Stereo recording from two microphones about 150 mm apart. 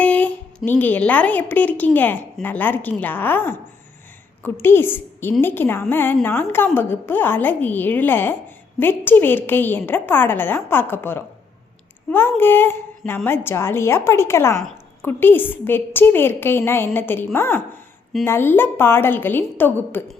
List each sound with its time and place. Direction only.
0.0 s speech: 10° left (ahead or behind)
4.6 s speech: 15° left (ahead or behind)